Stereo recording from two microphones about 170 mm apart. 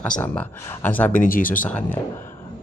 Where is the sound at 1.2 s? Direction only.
55° left (ahead or behind).